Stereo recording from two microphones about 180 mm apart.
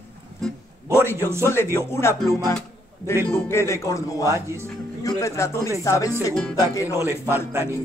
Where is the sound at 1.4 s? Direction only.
15° left (ahead or behind).